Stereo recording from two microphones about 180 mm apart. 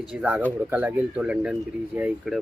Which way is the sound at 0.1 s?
10° right (ahead or behind).